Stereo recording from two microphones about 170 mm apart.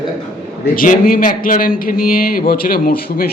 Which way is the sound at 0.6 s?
55° left (ahead or behind).